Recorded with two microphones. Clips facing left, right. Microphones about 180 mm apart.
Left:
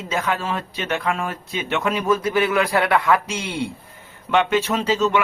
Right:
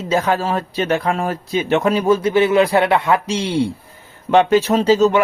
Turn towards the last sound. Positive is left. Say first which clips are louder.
# right 6 dB
turn(degrees=-40)  # may be behind; listen again after turning